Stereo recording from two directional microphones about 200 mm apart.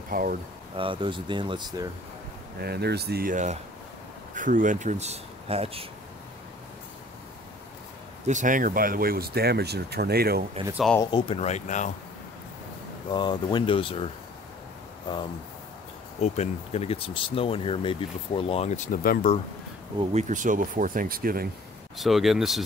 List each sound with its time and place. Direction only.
0.1 s speech: 45° right (ahead or behind)
0.7 s speech: 25° right (ahead or behind)
2.6 s speech: 55° right (ahead or behind); by 5.9 s 30° right (ahead or behind)
8.3 s speech: 40° right (ahead or behind)
10.7 s speech: centre (ahead or behind)
11.0 s speech: 20° left (ahead or behind)
13.1 s speech: 20° left (ahead or behind)
16.2 s speech: 30° left (ahead or behind)
20.0 s speech: 35° right (ahead or behind)
21.9 s speech: centre (ahead or behind)